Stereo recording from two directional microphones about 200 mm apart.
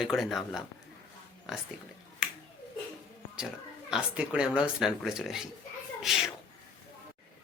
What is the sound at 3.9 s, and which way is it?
Speech, 5° right (ahead or behind).